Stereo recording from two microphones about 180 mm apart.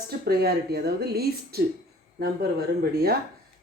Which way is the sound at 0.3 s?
60° right (ahead or behind).